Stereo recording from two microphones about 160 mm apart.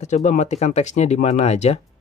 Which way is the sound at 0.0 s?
45° left (ahead or behind).